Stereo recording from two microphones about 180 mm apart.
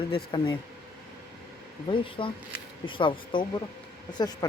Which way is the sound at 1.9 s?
30° left (ahead or behind).